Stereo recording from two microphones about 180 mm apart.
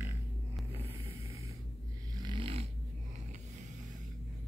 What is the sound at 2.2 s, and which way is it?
Snoring, 30° right (ahead or behind).